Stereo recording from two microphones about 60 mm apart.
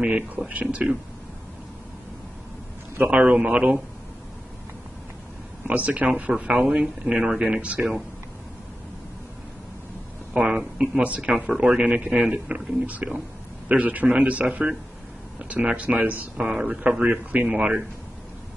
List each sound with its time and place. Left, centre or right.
0.0 s speech: right
3.1 s speech: centre
5.7 s speech: right
10.3 s speech: centre
16.3 s speech: centre